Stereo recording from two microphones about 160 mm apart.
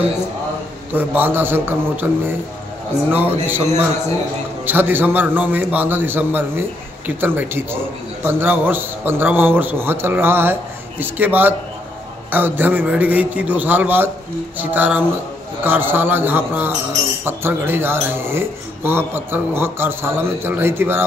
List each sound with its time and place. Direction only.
0.9 s a man's voice: 10° right (ahead or behind)
4.6 s a man's voice: 10° right (ahead or behind)